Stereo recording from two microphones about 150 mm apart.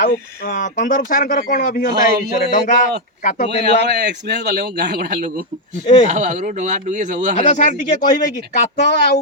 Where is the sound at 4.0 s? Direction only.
90° right.